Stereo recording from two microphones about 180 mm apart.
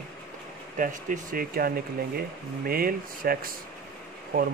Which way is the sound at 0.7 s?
45° right (ahead or behind).